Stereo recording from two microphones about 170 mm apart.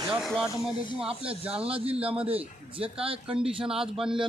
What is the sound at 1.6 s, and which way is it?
A man's voice, 35° right (ahead or behind).